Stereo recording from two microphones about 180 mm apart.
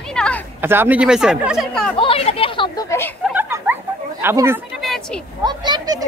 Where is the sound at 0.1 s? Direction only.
5° left (ahead or behind).